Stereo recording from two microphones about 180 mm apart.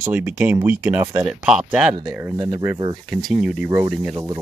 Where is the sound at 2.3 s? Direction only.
25° right (ahead or behind).